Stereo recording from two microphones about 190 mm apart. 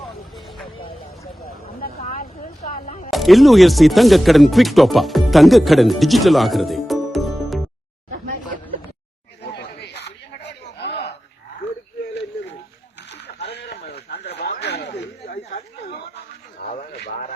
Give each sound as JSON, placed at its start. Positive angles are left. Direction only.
{"t": 0.0, "sound": "vehicle", "side_deg": 0}
{"t": 2.0, "sound": "vehicle", "side_deg": 45}
{"t": 3.1, "sound": "speech", "side_deg": 0}
{"t": 9.4, "sound": "chatter", "side_deg": 60}
{"t": 10.8, "sound": "a sound", "side_deg": 60}
{"t": 13.1, "sound": "a sound", "side_deg": 60}
{"t": 16.9, "sound": "radio", "side_deg": 60}